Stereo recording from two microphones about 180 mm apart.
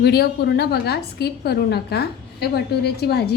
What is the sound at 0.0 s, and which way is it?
A woman's voice, 65° left (ahead or behind).